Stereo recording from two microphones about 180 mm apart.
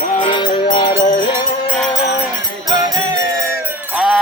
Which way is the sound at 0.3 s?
25° left (ahead or behind).